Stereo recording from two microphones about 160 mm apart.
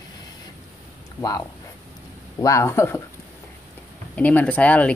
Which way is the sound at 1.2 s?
20° left (ahead or behind).